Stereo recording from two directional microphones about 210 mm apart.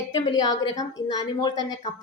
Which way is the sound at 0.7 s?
30° left (ahead or behind).